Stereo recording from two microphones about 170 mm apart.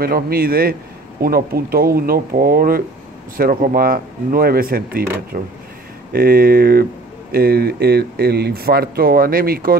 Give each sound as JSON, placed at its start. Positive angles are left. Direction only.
{"t": 0.0, "sound": "speech", "side_deg": -60}